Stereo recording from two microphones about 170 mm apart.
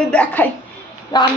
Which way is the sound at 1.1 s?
25° left (ahead or behind).